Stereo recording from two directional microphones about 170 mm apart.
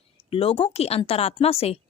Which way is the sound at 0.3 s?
35° left (ahead or behind).